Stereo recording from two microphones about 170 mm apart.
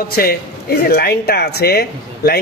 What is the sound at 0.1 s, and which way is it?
Speech, 60° left (ahead or behind).